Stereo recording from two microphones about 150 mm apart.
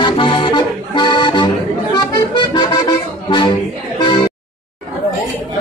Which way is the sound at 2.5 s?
30° left (ahead or behind).